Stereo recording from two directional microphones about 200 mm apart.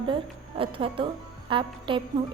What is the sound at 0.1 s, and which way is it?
A woman's voice, 25° right (ahead or behind).